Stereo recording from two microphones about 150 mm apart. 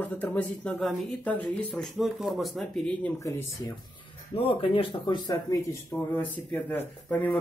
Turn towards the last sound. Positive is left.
turn(degrees=10)  # may be behind; listen again after turning